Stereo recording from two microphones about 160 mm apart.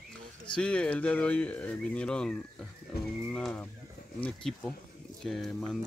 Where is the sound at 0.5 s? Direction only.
5° left (ahead or behind).